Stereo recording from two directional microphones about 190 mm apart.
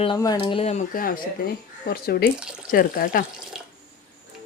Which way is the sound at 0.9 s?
50° left (ahead or behind).